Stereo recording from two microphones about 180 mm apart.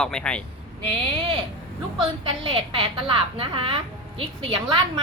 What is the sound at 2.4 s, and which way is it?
A woman's voice, 30° right (ahead or behind).